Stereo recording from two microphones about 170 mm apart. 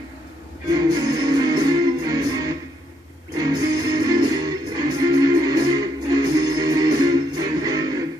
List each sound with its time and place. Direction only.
0.7 s music: 25° right (ahead or behind)
3.3 s music: 25° right (ahead or behind)